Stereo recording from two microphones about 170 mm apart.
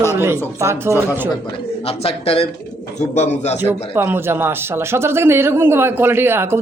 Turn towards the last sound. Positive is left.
turn(degrees=-15)  # may be behind; listen again after turning